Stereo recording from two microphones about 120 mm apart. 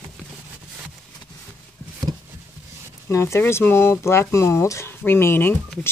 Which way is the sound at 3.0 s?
25° left (ahead or behind).